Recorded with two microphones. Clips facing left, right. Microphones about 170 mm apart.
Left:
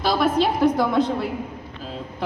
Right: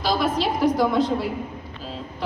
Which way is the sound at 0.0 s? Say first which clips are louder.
Left 3 dB; 55° left (ahead or behind).